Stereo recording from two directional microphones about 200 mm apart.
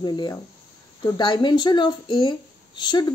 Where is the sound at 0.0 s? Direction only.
20° left (ahead or behind).